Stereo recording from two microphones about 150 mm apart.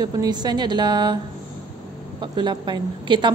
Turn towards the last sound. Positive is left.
turn(degrees=-30)  # may be behind; listen again after turning